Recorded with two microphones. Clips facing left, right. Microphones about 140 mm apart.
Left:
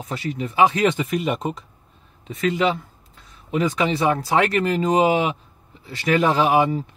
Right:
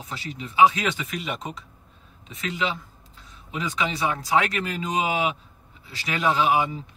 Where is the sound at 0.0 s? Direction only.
55° left (ahead or behind).